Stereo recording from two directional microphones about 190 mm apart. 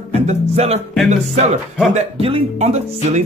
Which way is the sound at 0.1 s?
35° right (ahead or behind).